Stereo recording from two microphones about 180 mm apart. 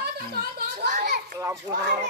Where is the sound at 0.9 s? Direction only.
45° right (ahead or behind).